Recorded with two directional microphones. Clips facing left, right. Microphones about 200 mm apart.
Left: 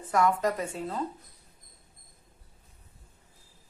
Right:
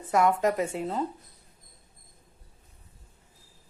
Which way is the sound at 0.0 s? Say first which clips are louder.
Right 2 dB; 25° right (ahead or behind).